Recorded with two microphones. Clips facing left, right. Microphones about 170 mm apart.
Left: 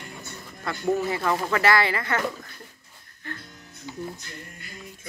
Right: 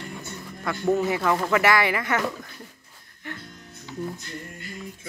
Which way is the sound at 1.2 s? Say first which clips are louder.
Right 1 dB; 15° right (ahead or behind).